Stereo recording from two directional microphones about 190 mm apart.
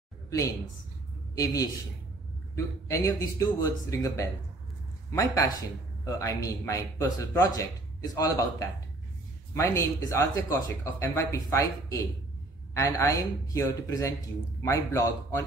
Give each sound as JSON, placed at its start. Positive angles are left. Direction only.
{"t": 1.3, "sound": "a man's voice", "side_deg": 20}